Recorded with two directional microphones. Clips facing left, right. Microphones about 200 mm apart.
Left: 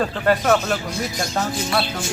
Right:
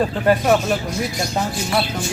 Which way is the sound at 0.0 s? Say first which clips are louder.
Right 2 dB; 15° right (ahead or behind).